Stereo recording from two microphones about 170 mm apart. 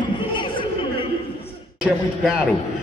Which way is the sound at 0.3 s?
30° left (ahead or behind).